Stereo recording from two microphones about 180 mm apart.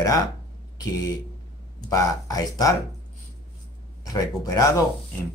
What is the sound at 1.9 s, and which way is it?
Speech, 20° left (ahead or behind).